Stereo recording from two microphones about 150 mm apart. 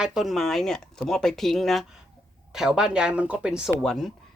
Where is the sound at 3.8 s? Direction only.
5° left (ahead or behind).